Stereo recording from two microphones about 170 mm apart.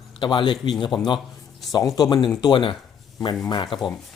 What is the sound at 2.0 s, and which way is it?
Speech, 25° left (ahead or behind).